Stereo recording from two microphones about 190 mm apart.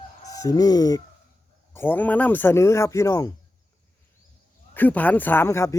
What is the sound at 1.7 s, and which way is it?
Speech, 10° left (ahead or behind).